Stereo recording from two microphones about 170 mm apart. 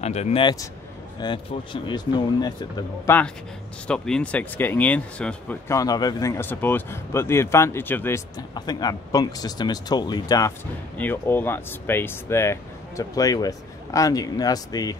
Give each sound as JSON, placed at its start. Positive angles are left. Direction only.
{"t": 0.0, "sound": "speech", "side_deg": 40}
{"t": 3.1, "sound": "speech", "side_deg": 15}
{"t": 11.0, "sound": "speech", "side_deg": 10}